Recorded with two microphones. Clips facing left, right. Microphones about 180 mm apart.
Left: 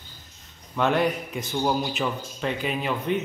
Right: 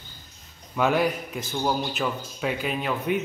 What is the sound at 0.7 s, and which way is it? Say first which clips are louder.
A man's voice: even; 5° right (ahead or behind).